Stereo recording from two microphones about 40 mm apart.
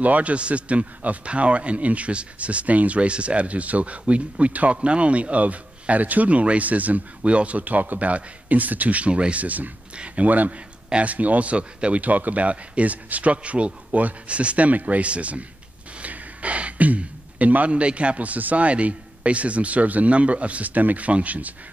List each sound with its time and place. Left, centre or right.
0.0 s speech: right
9.4 s speech: right
12.0 s speech: right